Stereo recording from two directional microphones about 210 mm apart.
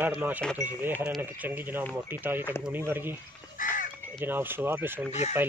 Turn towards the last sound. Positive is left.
turn(degrees=30)  # may be behind; listen again after turning